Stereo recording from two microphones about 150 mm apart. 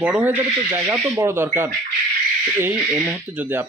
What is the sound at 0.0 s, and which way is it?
Speech, 10° right (ahead or behind).